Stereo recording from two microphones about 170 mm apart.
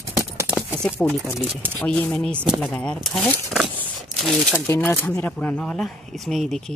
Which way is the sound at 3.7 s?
Centre (ahead or behind).